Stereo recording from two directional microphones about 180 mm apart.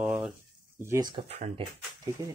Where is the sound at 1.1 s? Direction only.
35° right (ahead or behind).